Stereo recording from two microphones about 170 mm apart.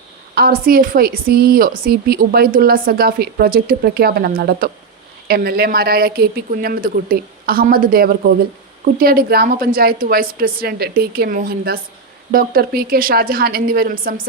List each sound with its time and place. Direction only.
0.3 s a woman's voice: 60° right (ahead or behind)